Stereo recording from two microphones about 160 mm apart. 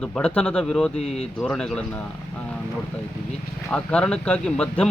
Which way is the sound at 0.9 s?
40° left (ahead or behind).